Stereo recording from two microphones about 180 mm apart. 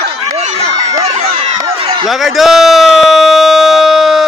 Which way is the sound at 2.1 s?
Centre (ahead or behind).